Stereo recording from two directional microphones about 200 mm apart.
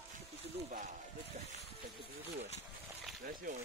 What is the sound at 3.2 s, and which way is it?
Speech, 45° right (ahead or behind).